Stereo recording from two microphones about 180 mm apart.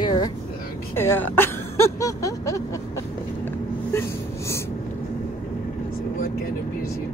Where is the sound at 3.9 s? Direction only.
15° left (ahead or behind).